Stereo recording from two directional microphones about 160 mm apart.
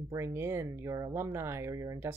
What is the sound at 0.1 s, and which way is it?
Speech, 15° right (ahead or behind).